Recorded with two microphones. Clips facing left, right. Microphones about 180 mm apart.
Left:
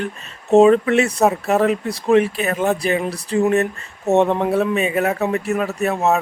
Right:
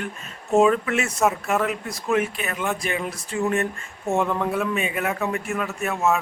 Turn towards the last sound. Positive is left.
turn(degrees=35)  # may be behind; listen again after turning